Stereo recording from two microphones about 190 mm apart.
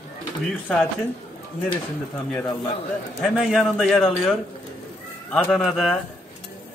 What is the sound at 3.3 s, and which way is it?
Speech, centre (ahead or behind).